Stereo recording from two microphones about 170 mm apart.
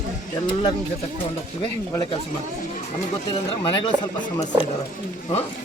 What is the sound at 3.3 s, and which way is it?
Speech, 30° left (ahead or behind).